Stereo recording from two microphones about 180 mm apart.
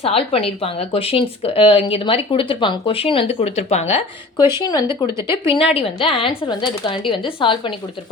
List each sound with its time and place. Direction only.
0.0 s speech: 30° left (ahead or behind)
4.6 s a woman's voice: 20° left (ahead or behind)
5.5 s a woman's voice: 30° left (ahead or behind)